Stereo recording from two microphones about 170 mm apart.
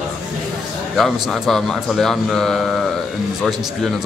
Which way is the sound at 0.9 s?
Centre (ahead or behind).